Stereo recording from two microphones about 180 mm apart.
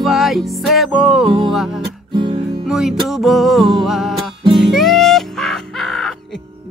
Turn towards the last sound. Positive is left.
turn(degrees=0)  # may be behind; listen again after turning